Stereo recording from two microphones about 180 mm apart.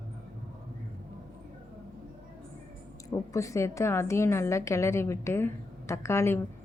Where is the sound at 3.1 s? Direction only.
15° left (ahead or behind).